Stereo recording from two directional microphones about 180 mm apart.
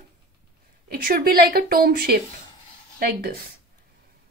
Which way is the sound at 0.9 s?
55° right (ahead or behind).